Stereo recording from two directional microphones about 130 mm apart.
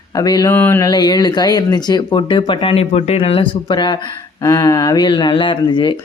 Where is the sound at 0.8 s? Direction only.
30° left (ahead or behind).